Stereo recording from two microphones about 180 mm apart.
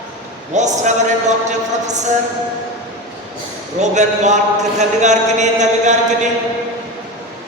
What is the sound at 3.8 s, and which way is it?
Speech, 40° right (ahead or behind).